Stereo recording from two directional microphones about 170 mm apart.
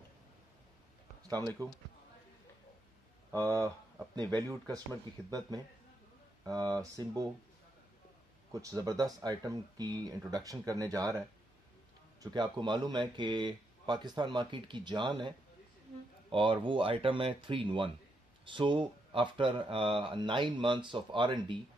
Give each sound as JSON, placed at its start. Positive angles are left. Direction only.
{"t": 1.2, "sound": "a sound", "side_deg": -20}
{"t": 3.3, "sound": "speech", "side_deg": -20}
{"t": 6.4, "sound": "speech", "side_deg": -25}
{"t": 8.5, "sound": "speech", "side_deg": -20}